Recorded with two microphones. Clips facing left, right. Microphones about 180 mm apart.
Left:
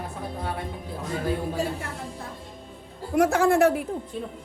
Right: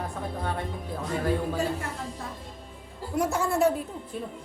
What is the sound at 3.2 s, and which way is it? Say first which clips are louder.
Speech: left 6 dB; 90° left.